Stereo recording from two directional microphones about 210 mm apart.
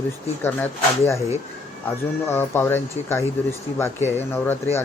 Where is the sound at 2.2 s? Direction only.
10° left (ahead or behind).